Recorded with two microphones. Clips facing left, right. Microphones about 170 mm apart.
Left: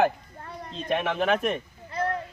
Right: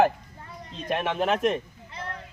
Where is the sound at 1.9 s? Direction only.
60° left (ahead or behind).